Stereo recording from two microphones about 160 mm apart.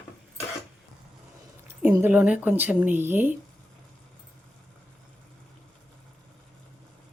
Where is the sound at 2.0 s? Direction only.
10° right (ahead or behind).